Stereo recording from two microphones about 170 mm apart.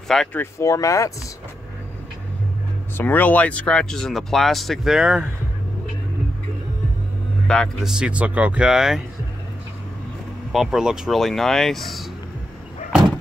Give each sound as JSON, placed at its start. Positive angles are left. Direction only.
{"t": 0.1, "sound": "speech", "side_deg": 5}
{"t": 0.4, "sound": "speech", "side_deg": 15}
{"t": 3.0, "sound": "speech", "side_deg": 10}
{"t": 7.4, "sound": "speech", "side_deg": 5}
{"t": 10.5, "sound": "speech", "side_deg": 0}